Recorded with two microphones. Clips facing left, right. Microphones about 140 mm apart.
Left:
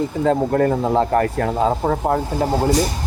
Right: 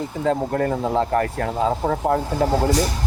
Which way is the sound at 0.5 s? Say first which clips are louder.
Left 4 dB; 45° left (ahead or behind).